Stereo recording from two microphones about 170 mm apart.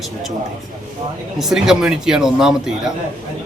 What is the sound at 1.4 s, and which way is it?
A man's voice, centre (ahead or behind).